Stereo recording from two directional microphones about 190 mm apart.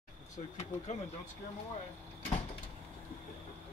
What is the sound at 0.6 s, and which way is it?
Speech, 35° left (ahead or behind).